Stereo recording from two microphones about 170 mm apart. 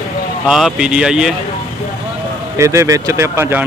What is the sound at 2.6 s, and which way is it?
Speech, 15° right (ahead or behind).